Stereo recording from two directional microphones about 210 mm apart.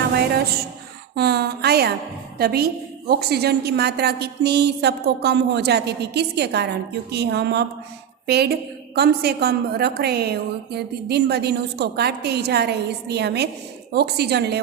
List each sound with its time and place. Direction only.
1.1 s a woman's voice: 50° right (ahead or behind)